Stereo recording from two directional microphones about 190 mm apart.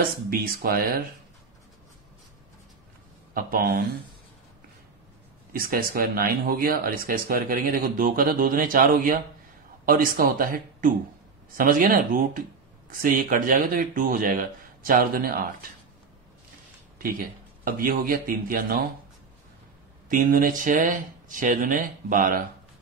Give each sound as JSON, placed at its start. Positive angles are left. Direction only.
{"t": 0.0, "sound": "speech", "side_deg": -50}
{"t": 3.3, "sound": "speech", "side_deg": -50}
{"t": 5.5, "sound": "speech", "side_deg": -50}
{"t": 17.6, "sound": "speech", "side_deg": -50}
{"t": 20.1, "sound": "speech", "side_deg": -45}